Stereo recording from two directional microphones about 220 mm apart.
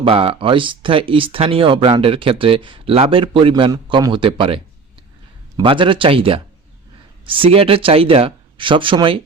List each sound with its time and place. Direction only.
0.0 s speech: 25° right (ahead or behind)